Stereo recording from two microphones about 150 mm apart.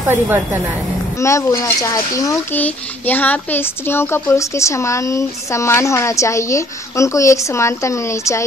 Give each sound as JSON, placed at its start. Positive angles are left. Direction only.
{"t": 0.1, "sound": "a woman's voice", "side_deg": -10}
{"t": 1.1, "sound": "a woman's voice", "side_deg": 20}
{"t": 2.6, "sound": "a woman's voice", "side_deg": 10}